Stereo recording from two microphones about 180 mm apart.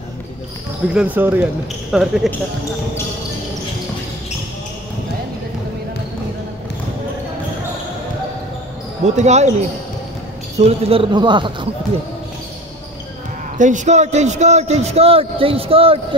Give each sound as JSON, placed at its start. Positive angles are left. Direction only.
{"t": 0.9, "sound": "speech", "side_deg": -10}
{"t": 9.0, "sound": "a man's voice", "side_deg": -40}
{"t": 10.6, "sound": "speech", "side_deg": -35}
{"t": 13.6, "sound": "a man's voice", "side_deg": -45}